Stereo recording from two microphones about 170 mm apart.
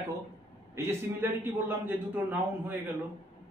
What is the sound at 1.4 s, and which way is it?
A man's voice, 10° right (ahead or behind).